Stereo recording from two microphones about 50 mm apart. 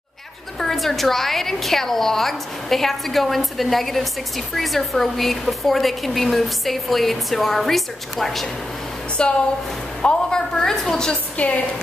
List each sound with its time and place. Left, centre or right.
0.6 s a woman's voice: centre
9.2 s a woman's voice: centre
11.3 s a woman's voice: left